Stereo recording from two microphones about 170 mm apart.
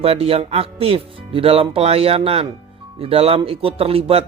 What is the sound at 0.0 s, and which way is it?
Speech, 35° right (ahead or behind).